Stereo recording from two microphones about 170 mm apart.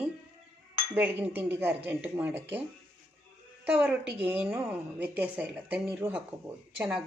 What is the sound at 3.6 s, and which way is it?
A woman's voice, 10° right (ahead or behind).